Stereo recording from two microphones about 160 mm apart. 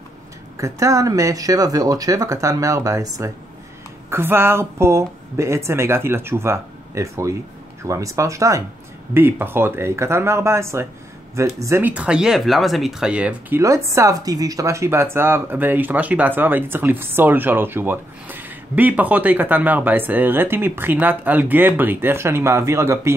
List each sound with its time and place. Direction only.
0.6 s speech: 20° right (ahead or behind)
13.6 s speech: 20° right (ahead or behind)